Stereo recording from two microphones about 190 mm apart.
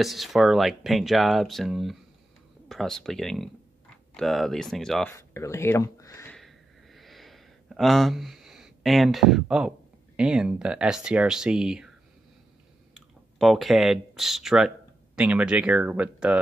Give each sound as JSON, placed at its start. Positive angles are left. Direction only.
{"t": 0.0, "sound": "speech", "side_deg": 0}
{"t": 5.1, "sound": "speech", "side_deg": 15}
{"t": 6.3, "sound": "a sound", "side_deg": 0}
{"t": 10.1, "sound": "speech", "side_deg": -5}
{"t": 12.9, "sound": "speech", "side_deg": 0}